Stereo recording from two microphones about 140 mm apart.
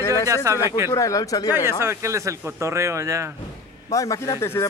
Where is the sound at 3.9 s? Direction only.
25° left (ahead or behind).